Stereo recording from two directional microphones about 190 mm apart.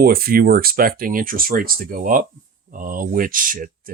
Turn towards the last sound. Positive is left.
turn(degrees=-45)  # may be behind; listen again after turning